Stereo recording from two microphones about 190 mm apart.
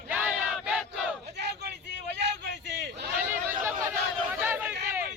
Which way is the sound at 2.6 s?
60° right (ahead or behind).